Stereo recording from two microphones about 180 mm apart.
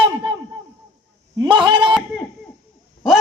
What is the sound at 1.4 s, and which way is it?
Speech, 25° right (ahead or behind).